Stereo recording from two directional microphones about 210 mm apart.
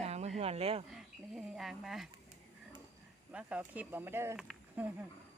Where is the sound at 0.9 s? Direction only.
Centre (ahead or behind).